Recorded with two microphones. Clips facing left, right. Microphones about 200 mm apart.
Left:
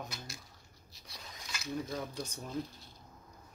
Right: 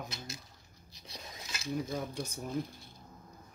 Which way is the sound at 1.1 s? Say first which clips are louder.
Right 2 dB; 25° right (ahead or behind).